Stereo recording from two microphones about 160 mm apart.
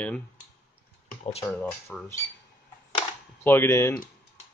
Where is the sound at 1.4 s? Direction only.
15° left (ahead or behind).